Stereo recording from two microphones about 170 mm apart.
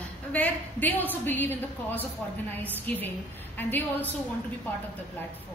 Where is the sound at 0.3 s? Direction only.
10° left (ahead or behind).